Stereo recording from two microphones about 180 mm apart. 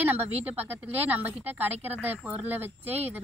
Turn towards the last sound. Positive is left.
turn(degrees=-10)  # may be behind; listen again after turning